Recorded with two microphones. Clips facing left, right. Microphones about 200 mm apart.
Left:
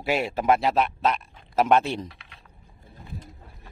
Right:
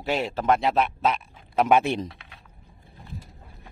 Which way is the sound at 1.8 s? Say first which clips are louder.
Right 3 dB; 20° right (ahead or behind).